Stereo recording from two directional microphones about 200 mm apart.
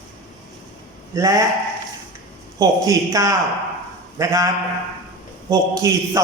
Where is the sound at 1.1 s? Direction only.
15° right (ahead or behind).